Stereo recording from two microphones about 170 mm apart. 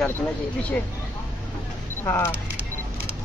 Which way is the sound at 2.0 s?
20° left (ahead or behind).